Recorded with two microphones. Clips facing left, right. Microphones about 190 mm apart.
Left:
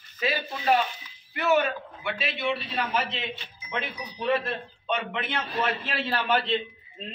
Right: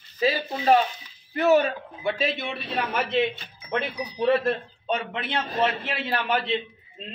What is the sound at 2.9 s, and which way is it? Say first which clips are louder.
Speech: right 6 dB; 55° right (ahead or behind).